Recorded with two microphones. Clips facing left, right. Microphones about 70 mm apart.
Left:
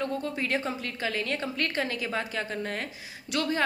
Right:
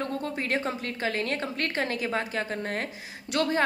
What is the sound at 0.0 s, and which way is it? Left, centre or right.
A woman's voice, right.